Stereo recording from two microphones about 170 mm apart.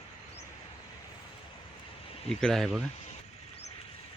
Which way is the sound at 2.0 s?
35° left (ahead or behind).